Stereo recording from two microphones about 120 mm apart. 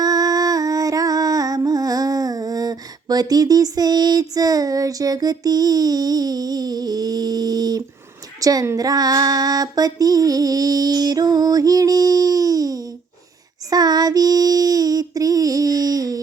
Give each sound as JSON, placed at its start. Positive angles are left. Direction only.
{"t": 0.0, "sound": "music", "side_deg": -30}
{"t": 8.4, "sound": "a sound", "side_deg": -30}
{"t": 13.7, "sound": "child singing", "side_deg": -35}